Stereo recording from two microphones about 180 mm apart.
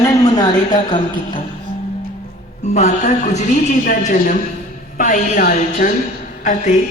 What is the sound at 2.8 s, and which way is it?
A woman's voice, 40° left (ahead or behind).